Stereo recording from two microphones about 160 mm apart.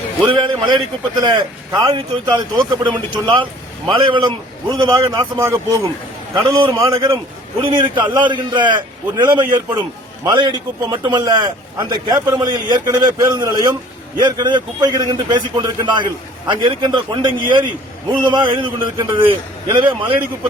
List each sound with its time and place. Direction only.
0.3 s a man's voice: 25° right (ahead or behind)